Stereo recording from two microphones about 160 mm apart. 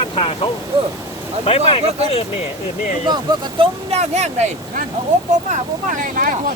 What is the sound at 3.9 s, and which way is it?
Speech, 45° right (ahead or behind).